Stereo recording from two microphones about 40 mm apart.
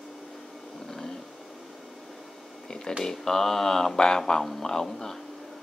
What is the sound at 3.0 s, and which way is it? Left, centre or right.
Speech, centre.